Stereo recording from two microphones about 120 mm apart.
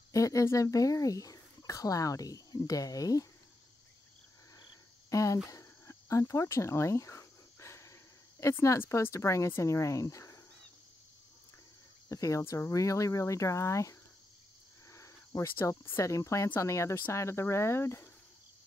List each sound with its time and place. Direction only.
0.1 s speech: 25° left (ahead or behind)
5.1 s speech: 25° left (ahead or behind)
12.1 s speech: 25° left (ahead or behind)